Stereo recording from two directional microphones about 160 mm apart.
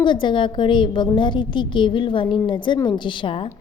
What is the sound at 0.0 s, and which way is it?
A woman's voice, 30° left (ahead or behind).